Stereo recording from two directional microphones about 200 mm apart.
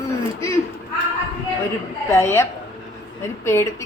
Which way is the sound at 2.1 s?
10° left (ahead or behind).